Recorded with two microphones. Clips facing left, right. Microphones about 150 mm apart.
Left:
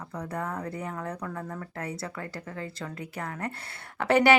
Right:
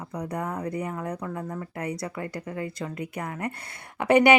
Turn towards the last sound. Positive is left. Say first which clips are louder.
# right 3 dB
turn(degrees=-15)  # may be behind; listen again after turning